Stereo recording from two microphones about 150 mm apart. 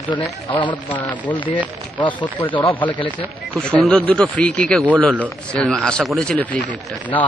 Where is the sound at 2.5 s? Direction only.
35° left (ahead or behind).